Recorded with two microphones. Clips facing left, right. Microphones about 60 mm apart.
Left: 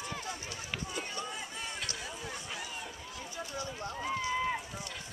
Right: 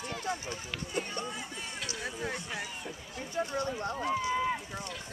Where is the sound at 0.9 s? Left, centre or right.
Right.